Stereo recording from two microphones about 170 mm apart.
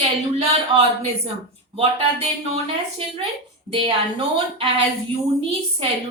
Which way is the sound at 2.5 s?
35° right (ahead or behind).